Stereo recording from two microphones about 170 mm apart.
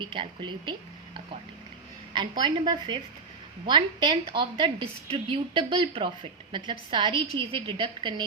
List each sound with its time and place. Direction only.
0.0 s a woman's voice: 30° right (ahead or behind)